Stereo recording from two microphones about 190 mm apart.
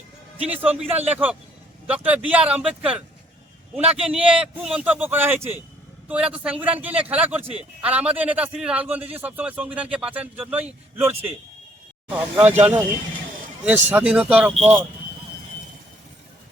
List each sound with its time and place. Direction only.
0.3 s speech: 5° right (ahead or behind)
0.8 s a man's voice: 35° right (ahead or behind)
1.9 s speech: 5° right (ahead or behind)
13.9 s speech: 5° right (ahead or behind)